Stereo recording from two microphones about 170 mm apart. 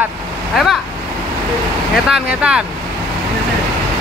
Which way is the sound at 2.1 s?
5° right (ahead or behind).